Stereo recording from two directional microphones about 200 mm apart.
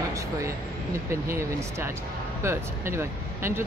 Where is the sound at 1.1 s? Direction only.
15° right (ahead or behind).